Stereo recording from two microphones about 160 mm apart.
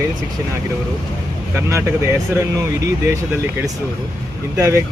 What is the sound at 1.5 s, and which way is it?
Speech, 15° right (ahead or behind).